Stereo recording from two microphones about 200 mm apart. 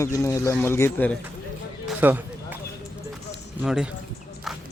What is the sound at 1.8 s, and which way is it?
Basketball bounce, 10° right (ahead or behind).